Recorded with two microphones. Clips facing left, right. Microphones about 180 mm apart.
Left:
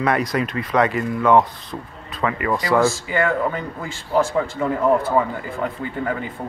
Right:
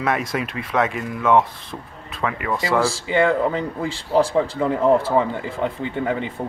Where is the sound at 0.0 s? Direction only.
5° right (ahead or behind).